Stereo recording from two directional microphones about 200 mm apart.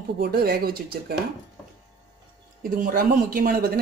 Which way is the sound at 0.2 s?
50° right (ahead or behind).